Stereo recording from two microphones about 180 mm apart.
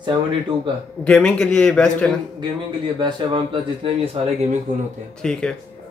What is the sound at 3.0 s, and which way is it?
A man's voice, 30° right (ahead or behind).